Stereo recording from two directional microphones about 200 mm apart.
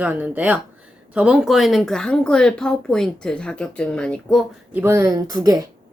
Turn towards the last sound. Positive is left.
turn(degrees=-15)  # may be behind; listen again after turning